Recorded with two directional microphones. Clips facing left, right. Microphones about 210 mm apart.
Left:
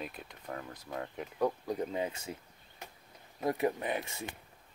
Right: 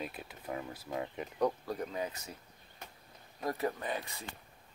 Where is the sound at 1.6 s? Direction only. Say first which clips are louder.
Left 3 dB; 20° left (ahead or behind).